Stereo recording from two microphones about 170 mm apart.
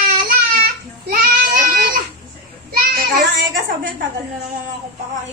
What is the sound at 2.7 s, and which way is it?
Child singing, 60° right (ahead or behind).